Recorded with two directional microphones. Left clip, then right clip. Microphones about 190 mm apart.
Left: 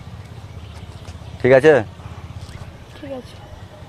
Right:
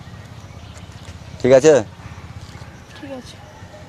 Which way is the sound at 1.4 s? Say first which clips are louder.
Even; 10° right (ahead or behind).